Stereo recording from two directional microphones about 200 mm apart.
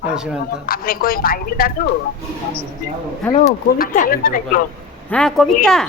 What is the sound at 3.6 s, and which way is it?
Speech, 45° left (ahead or behind).